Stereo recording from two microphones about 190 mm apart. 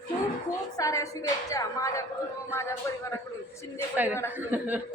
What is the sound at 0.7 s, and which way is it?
A woman's voice, 15° left (ahead or behind).